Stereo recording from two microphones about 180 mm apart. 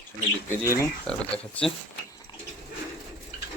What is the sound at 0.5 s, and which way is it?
Speech, 15° left (ahead or behind).